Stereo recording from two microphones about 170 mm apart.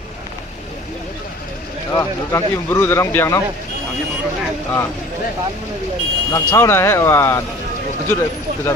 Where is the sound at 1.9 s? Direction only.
20° left (ahead or behind).